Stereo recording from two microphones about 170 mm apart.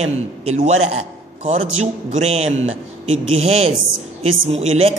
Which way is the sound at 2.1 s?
40° right (ahead or behind).